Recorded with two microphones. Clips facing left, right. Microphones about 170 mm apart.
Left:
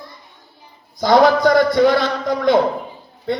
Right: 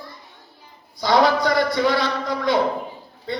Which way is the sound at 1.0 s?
50° left (ahead or behind).